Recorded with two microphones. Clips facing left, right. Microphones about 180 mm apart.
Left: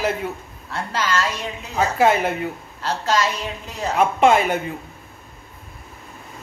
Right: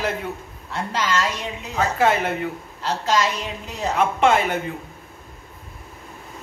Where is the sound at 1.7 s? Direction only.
10° left (ahead or behind).